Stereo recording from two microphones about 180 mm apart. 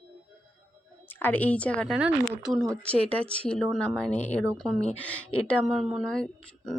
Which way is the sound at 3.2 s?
5° left (ahead or behind).